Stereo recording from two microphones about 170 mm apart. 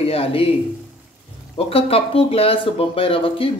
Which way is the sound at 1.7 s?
35° left (ahead or behind).